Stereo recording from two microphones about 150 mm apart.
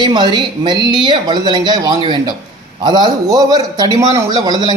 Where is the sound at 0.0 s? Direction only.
30° right (ahead or behind).